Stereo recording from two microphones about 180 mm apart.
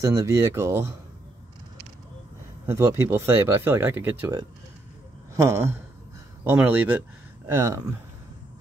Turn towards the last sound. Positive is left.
turn(degrees=-15)  # may be behind; listen again after turning